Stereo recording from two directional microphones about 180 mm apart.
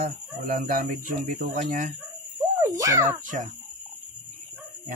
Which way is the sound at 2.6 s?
20° right (ahead or behind).